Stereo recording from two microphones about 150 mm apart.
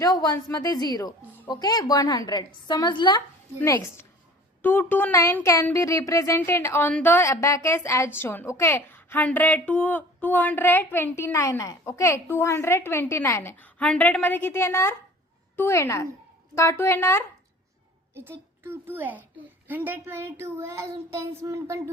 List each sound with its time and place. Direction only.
0.0 s a woman's voice: 25° left (ahead or behind)
3.6 s a woman's voice: 20° left (ahead or behind)
18.3 s a child's voice: 15° right (ahead or behind)